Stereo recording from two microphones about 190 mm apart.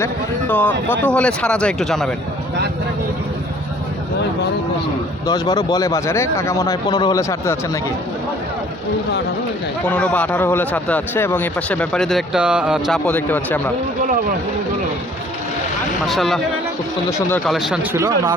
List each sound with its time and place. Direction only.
0.0 s a man's voice: 10° left (ahead or behind)
5.2 s speech: 20° left (ahead or behind)
9.9 s a man's voice: 5° left (ahead or behind)
13.1 s a man's voice: 10° left (ahead or behind)
16.0 s speech: centre (ahead or behind)
17.1 s a man's voice: 15° left (ahead or behind)
17.4 s speech: centre (ahead or behind)
17.9 s speech: 15° right (ahead or behind)